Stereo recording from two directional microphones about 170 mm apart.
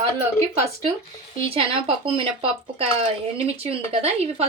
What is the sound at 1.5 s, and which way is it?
Speech, 35° right (ahead or behind).